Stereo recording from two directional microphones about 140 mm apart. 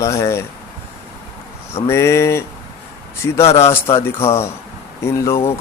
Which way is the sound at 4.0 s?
20° left (ahead or behind).